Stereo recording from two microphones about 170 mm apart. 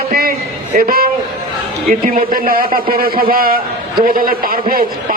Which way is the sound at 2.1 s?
60° right (ahead or behind).